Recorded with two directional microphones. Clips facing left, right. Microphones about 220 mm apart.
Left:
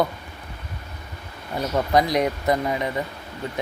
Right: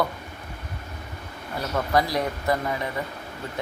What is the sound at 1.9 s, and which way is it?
Speech, 20° left (ahead or behind).